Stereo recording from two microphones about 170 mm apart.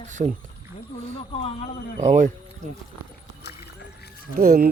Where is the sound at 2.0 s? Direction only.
45° right (ahead or behind).